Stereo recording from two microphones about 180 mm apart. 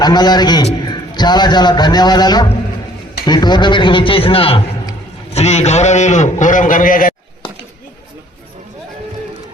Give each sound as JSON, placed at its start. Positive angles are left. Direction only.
{"t": 0.0, "sound": "a man's voice", "side_deg": 25}